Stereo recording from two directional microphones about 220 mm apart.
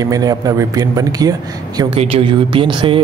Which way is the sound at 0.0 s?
15° right (ahead or behind).